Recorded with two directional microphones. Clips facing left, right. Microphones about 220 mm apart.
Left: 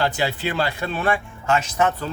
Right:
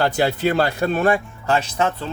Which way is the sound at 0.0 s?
45° right (ahead or behind).